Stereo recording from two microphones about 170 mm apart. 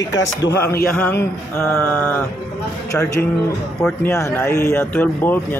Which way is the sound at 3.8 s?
15° left (ahead or behind).